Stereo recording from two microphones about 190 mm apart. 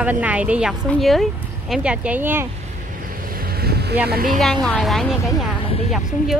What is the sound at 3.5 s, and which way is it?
Boat, 55° right (ahead or behind).